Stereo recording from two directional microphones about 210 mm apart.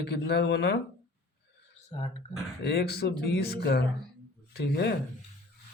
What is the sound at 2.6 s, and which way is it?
Speech, 50° left (ahead or behind).